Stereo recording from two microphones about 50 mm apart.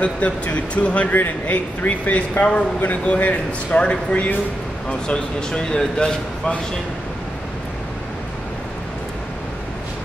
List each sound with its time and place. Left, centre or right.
0.0 s speech: left